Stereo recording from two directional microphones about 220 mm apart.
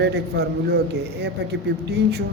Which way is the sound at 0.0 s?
50° right (ahead or behind).